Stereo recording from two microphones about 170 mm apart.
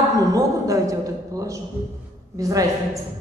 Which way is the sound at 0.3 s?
20° right (ahead or behind).